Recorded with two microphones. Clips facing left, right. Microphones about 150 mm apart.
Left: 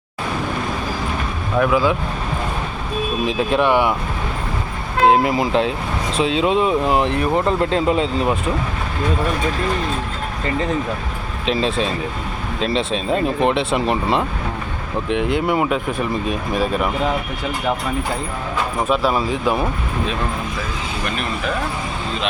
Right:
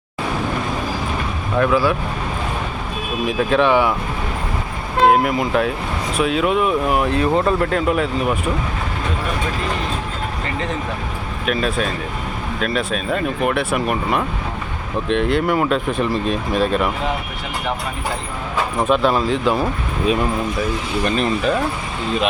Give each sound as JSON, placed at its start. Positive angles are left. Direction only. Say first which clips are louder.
{"t": 1.5, "sound": "speech", "louder": "even", "side_deg": 10}
{"t": 3.2, "sound": "speech", "louder": "right 2 dB", "side_deg": 15}
{"t": 5.2, "sound": "speech", "louder": "left 1 dB", "side_deg": 30}
{"t": 11.4, "sound": "speech", "louder": "left 1 dB", "side_deg": 25}
{"t": 15.1, "sound": "speech", "louder": "right 1 dB", "side_deg": 15}
{"t": 18.9, "sound": "speech", "louder": "right 3 dB", "side_deg": 5}